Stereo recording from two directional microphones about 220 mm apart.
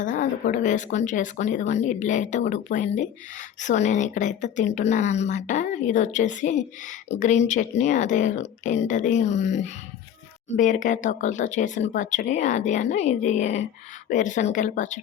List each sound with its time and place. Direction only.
0.0 s speech: 35° left (ahead or behind)